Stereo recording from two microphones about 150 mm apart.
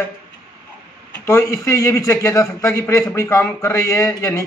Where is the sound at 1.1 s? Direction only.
20° left (ahead or behind).